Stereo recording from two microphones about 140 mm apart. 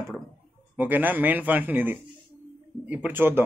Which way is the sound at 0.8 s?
15° right (ahead or behind).